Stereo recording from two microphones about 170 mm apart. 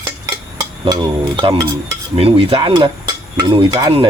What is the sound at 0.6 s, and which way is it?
Stir, 25° right (ahead or behind).